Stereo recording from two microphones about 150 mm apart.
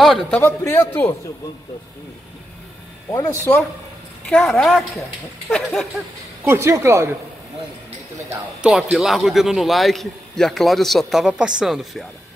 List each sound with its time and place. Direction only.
0.0 s a man's voice: centre (ahead or behind)
0.4 s a man's voice: 15° left (ahead or behind)
3.1 s speech: 20° left (ahead or behind)
4.3 s a man's voice: 5° left (ahead or behind)
6.4 s speech: 15° right (ahead or behind)
8.5 s a man's voice: 5° right (ahead or behind)